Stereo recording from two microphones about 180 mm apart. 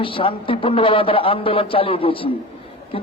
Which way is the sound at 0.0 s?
30° left (ahead or behind).